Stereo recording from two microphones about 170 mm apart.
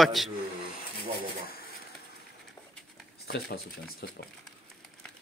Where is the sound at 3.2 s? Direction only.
65° left (ahead or behind).